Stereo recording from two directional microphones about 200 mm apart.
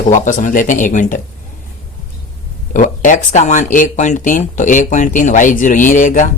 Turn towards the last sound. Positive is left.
turn(degrees=40)  # may be behind; listen again after turning